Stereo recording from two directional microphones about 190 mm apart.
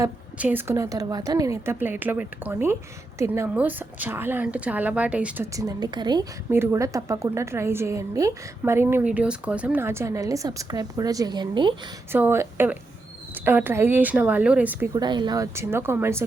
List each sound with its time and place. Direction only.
0.0 s a woman's voice: 10° right (ahead or behind)
5.5 s a woman's voice: 20° right (ahead or behind)
6.5 s a woman's voice: 10° right (ahead or behind)
12.1 s a woman's voice: 10° right (ahead or behind)
14.9 s a woman's voice: 25° right (ahead or behind)